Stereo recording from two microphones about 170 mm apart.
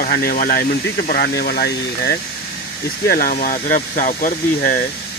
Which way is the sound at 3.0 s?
60° left (ahead or behind).